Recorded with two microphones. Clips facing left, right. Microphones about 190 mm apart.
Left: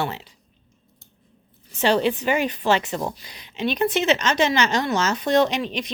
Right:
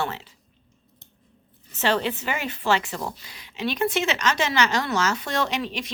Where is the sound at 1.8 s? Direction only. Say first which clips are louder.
Left 4 dB; 15° left (ahead or behind).